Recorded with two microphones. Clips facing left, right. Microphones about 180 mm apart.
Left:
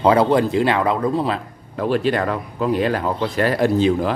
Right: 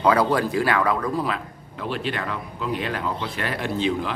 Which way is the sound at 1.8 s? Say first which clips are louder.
Left 9 dB; 45° left (ahead or behind).